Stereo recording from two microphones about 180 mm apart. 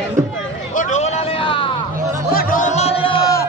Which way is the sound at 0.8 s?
40° left (ahead or behind).